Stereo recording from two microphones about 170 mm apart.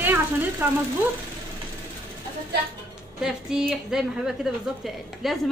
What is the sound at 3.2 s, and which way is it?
A woman's voice, centre (ahead or behind).